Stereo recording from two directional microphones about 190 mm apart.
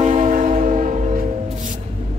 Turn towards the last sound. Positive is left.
turn(degrees=-40)  # may be behind; listen again after turning